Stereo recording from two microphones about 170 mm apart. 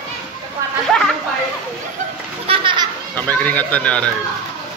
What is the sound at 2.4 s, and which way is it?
Children playing, 30° right (ahead or behind).